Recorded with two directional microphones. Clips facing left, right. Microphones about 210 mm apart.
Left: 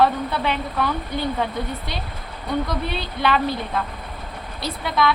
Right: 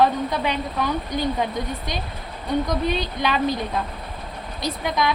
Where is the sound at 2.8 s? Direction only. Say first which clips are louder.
Even; 15° right (ahead or behind).